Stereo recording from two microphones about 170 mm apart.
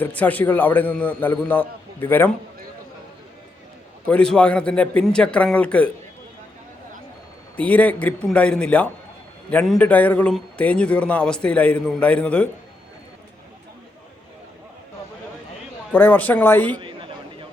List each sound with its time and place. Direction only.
0.0 s a man's voice: 10° left (ahead or behind)
4.0 s a man's voice: 5° left (ahead or behind)
7.5 s a man's voice: 10° left (ahead or behind)
15.9 s a man's voice: 10° left (ahead or behind)
16.7 s a sound: 30° right (ahead or behind)